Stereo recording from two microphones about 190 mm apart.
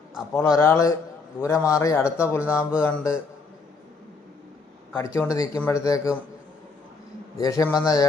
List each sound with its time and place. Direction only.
0.3 s speech: 15° left (ahead or behind)
4.9 s speech: 10° left (ahead or behind)
7.3 s speech: 15° left (ahead or behind)